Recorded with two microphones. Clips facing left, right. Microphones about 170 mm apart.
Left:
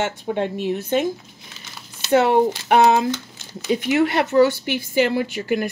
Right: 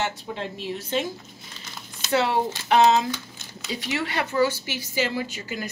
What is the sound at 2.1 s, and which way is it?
A woman's voice, 55° left (ahead or behind).